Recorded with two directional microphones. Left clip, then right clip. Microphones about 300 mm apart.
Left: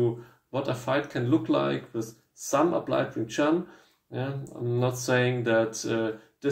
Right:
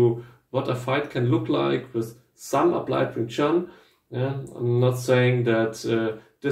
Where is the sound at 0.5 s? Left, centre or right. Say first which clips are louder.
Right 3 dB; left.